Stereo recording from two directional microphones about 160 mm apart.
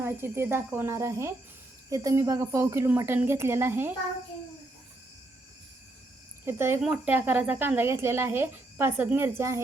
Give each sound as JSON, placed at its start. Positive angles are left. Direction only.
{"t": 0.0, "sound": "speech", "side_deg": -15}
{"t": 6.4, "sound": "speech", "side_deg": -15}